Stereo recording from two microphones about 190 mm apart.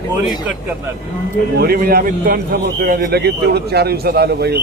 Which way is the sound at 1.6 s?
50° right (ahead or behind).